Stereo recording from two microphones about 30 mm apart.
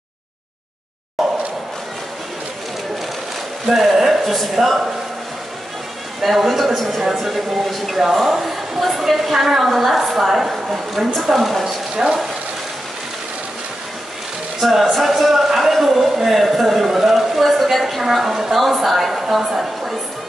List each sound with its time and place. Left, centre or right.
1.2 s a sound: centre
3.6 s a woman's voice: centre
6.2 s a woman's voice: centre
11.9 s speech: right
14.6 s a sound: centre
18.0 s a woman's voice: centre